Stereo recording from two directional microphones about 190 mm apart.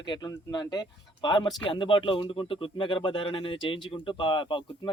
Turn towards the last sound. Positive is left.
turn(degrees=25)  # may be behind; listen again after turning